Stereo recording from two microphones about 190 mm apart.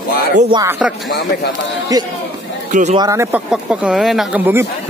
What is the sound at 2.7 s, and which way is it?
Speech, 35° right (ahead or behind).